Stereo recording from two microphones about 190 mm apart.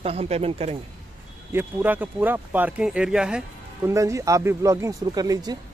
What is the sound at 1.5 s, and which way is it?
Speech, 10° right (ahead or behind).